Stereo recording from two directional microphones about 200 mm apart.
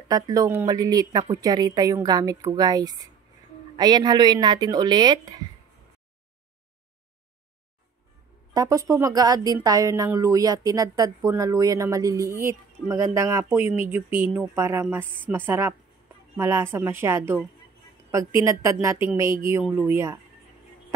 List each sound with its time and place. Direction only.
0.1 s speech: 15° right (ahead or behind)
8.5 s speech: 15° right (ahead or behind)